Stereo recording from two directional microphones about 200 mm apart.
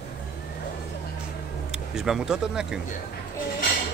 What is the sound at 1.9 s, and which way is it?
Speech, 5° right (ahead or behind).